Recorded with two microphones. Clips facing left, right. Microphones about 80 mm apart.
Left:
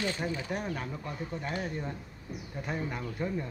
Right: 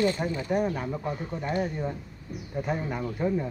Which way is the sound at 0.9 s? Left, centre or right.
Right.